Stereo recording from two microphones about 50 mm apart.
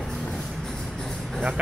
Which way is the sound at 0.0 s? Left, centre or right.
Centre.